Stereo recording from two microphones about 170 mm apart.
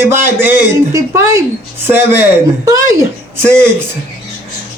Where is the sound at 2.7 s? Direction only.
20° right (ahead or behind).